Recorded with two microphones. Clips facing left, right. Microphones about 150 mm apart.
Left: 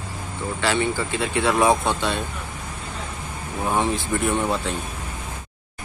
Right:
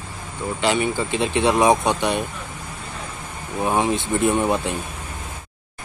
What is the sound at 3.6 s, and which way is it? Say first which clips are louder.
Speech: right 2 dB; 15° right (ahead or behind).